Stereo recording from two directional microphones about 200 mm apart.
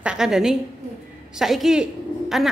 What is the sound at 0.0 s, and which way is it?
A woman's voice, 5° right (ahead or behind).